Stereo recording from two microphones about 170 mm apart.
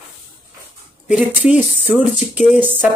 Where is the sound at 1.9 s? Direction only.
5° right (ahead or behind).